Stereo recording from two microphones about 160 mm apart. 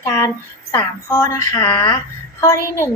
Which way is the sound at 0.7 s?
15° left (ahead or behind).